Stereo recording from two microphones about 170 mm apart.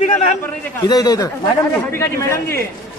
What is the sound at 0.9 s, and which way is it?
Speech, 20° left (ahead or behind).